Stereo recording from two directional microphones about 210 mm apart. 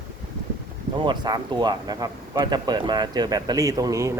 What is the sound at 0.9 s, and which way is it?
Speech, 20° right (ahead or behind).